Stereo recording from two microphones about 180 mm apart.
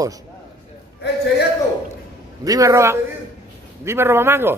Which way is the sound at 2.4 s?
20° right (ahead or behind).